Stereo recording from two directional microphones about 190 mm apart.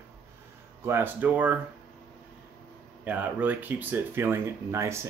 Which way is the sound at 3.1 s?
10° right (ahead or behind).